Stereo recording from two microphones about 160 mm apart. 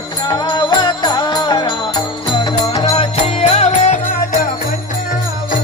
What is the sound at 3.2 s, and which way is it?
Music, 45° left (ahead or behind).